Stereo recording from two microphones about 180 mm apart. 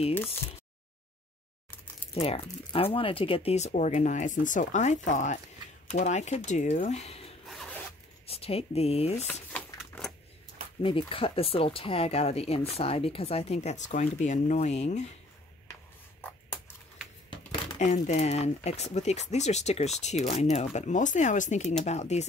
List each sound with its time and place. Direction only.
2.1 s speech: 30° left (ahead or behind)
7.4 s zipper: centre (ahead or behind)
8.3 s speech: 35° left (ahead or behind)
9.3 s a sound: 10° left (ahead or behind)
10.8 s speech: 30° left (ahead or behind)
15.7 s a sound: 10° left (ahead or behind)
18.0 s speech: 40° left (ahead or behind)